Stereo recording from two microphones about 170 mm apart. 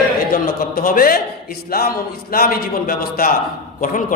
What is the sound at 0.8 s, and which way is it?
A man's voice, 55° left (ahead or behind).